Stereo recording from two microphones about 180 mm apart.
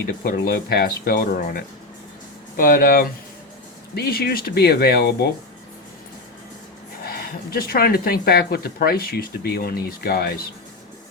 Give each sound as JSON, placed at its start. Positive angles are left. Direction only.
{"t": 0.3, "sound": "speech", "side_deg": 60}
{"t": 7.0, "sound": "speech", "side_deg": 60}